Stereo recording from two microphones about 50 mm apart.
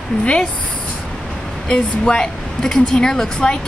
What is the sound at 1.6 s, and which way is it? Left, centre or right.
Speech, centre.